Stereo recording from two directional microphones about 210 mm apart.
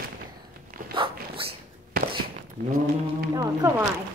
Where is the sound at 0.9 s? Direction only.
25° right (ahead or behind).